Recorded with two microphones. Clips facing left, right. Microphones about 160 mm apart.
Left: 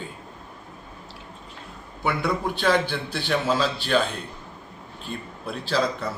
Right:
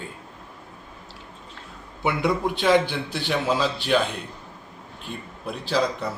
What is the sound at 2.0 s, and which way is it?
Speech, 20° right (ahead or behind).